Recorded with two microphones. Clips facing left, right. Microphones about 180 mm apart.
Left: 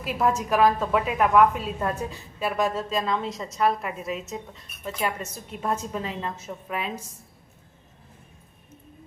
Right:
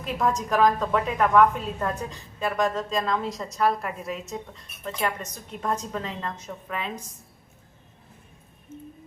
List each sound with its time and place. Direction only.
0.0 s a woman's voice: 5° left (ahead or behind)